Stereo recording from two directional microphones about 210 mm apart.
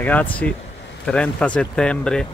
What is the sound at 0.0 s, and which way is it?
Speech, 5° left (ahead or behind).